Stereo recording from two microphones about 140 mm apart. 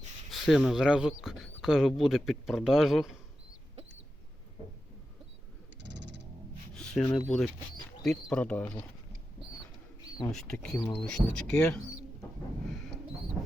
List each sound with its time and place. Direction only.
0.3 s speech: centre (ahead or behind)
6.7 s a sound: 5° left (ahead or behind)
7.3 s speech: 10° left (ahead or behind)
10.0 s bird: 25° left (ahead or behind)
10.3 s speech: 5° left (ahead or behind)